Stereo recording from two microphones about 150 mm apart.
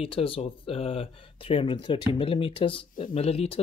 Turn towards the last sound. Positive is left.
turn(degrees=40)  # may be behind; listen again after turning